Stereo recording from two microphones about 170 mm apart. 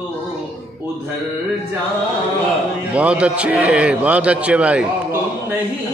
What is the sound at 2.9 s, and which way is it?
A man's voice, 5° right (ahead or behind).